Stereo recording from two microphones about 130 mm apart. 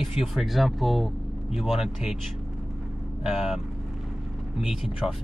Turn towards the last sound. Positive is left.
turn(degrees=-5)  # may be behind; listen again after turning